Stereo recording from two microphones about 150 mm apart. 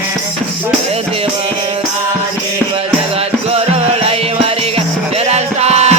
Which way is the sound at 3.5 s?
40° right (ahead or behind).